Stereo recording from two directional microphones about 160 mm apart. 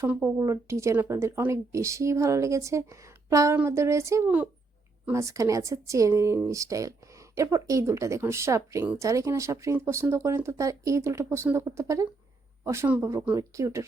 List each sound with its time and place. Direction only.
0.0 s speech: 15° right (ahead or behind)